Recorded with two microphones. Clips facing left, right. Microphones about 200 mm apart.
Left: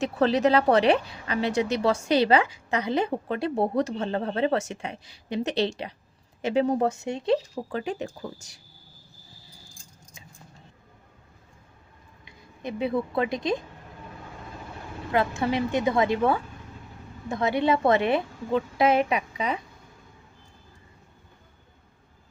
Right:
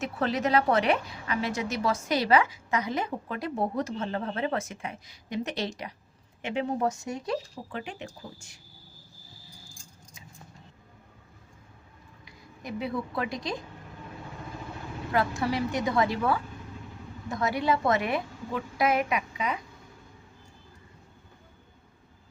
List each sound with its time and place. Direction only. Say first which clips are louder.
0.2 s a woman's voice: left 5 dB; 30° left (ahead or behind)
7.0 s a woman's voice: left 7 dB; 25° left (ahead or behind)
7.7 s a woman's voice: left 7 dB; 40° left (ahead or behind)
12.2 s a woman's voice: left 6 dB; 25° left (ahead or behind)
15.1 s a woman's voice: left 3 dB; 20° left (ahead or behind)